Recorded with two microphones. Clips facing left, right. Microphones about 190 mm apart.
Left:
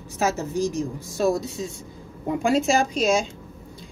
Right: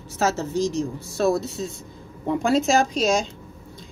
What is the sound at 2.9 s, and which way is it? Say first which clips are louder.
Speech: even; 35° right (ahead or behind).